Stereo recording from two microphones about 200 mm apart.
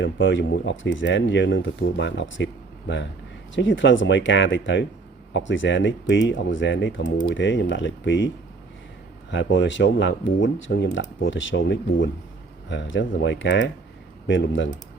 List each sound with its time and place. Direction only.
0.0 s speech: 65° left (ahead or behind)
9.3 s speech: 65° left (ahead or behind)